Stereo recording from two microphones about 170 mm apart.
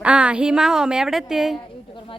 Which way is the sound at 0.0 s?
5° right (ahead or behind).